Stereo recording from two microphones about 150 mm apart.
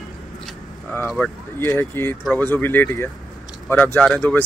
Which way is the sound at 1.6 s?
15° left (ahead or behind).